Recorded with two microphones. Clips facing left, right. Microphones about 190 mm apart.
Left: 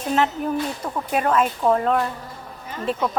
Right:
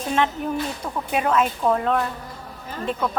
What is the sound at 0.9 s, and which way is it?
A woman's voice, centre (ahead or behind).